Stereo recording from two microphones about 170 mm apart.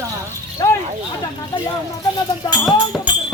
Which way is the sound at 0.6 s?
20° left (ahead or behind).